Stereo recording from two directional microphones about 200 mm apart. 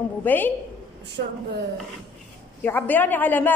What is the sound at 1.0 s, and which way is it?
Speech, 55° right (ahead or behind).